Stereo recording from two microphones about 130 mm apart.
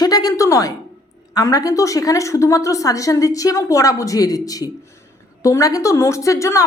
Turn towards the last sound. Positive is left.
turn(degrees=25)  # may be behind; listen again after turning